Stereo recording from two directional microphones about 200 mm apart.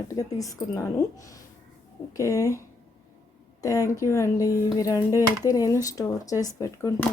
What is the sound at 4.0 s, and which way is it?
A woman's voice, 15° left (ahead or behind).